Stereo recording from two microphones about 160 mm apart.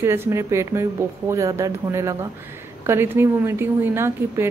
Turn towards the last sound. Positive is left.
turn(degrees=-15)  # may be behind; listen again after turning